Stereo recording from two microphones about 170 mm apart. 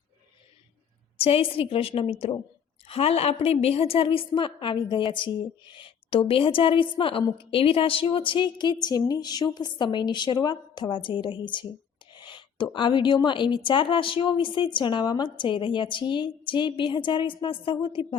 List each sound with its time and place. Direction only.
1.2 s a woman's voice: 35° left (ahead or behind)
12.2 s a sound: 30° left (ahead or behind)
12.7 s a woman's voice: 30° left (ahead or behind)